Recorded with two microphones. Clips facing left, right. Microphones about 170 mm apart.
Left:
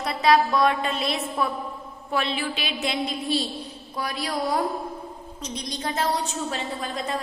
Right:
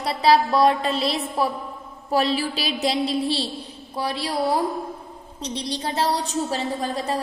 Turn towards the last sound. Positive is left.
turn(degrees=-35)  # may be behind; listen again after turning